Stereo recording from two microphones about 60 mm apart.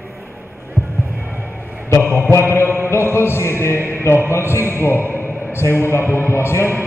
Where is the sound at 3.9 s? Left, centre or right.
Left.